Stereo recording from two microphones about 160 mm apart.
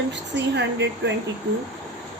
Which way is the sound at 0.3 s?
90° right.